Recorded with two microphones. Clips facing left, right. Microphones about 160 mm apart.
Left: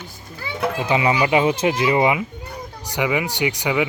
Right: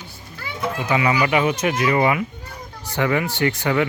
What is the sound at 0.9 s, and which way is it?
Speech, 25° left (ahead or behind).